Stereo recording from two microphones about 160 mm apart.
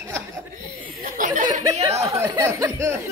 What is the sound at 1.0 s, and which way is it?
Speech, 55° right (ahead or behind).